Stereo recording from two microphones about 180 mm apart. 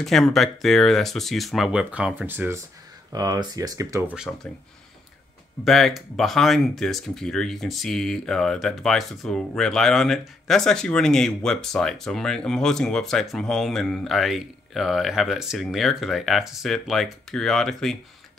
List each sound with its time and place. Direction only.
0.0 s speech: centre (ahead or behind); by 4.0 s 20° right (ahead or behind)
4.1 s speech: 5° right (ahead or behind)
5.6 s speech: centre (ahead or behind)